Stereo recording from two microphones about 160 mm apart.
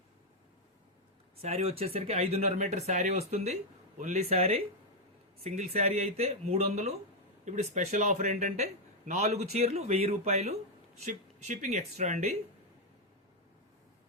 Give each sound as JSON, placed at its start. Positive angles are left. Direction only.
{"t": 1.4, "sound": "speech", "side_deg": -40}